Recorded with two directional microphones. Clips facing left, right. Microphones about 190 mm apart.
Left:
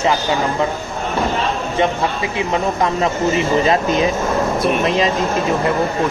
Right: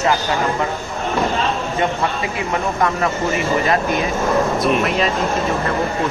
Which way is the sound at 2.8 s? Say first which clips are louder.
Left 2 dB; 25° left (ahead or behind).